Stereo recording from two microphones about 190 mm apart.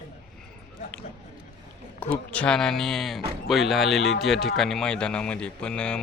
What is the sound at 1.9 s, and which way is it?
Speech, 5° left (ahead or behind).